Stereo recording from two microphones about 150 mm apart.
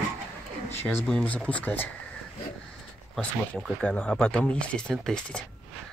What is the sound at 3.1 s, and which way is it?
Speech, 10° left (ahead or behind).